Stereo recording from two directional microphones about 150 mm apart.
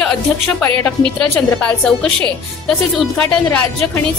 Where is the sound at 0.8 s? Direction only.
10° left (ahead or behind).